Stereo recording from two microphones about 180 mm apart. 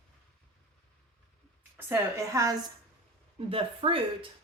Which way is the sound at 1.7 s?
15° right (ahead or behind).